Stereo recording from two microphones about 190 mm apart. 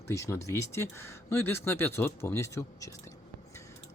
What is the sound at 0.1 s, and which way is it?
Speech, 15° left (ahead or behind).